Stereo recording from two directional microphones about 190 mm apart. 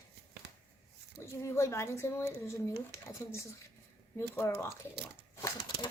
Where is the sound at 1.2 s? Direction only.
15° left (ahead or behind).